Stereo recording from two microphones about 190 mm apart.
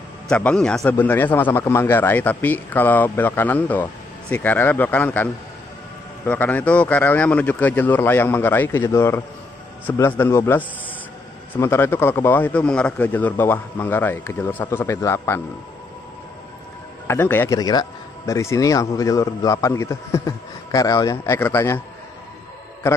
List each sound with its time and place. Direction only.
0.3 s speech: 5° left (ahead or behind)
17.1 s speech: 10° left (ahead or behind)